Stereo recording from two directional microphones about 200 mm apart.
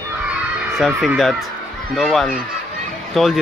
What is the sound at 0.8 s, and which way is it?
Speech, centre (ahead or behind).